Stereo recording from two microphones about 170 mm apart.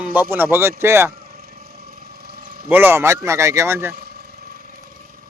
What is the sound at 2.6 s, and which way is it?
Speech, 10° right (ahead or behind).